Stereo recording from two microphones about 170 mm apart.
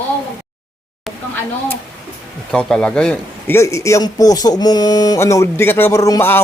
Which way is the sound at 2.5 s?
5° left (ahead or behind).